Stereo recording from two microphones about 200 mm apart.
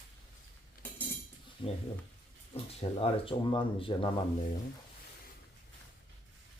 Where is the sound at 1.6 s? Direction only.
25° left (ahead or behind).